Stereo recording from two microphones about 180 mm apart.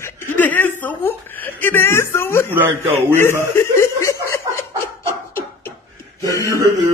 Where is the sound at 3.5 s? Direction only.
15° left (ahead or behind).